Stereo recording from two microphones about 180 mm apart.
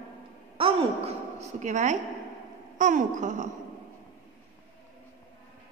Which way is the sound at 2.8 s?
45° right (ahead or behind).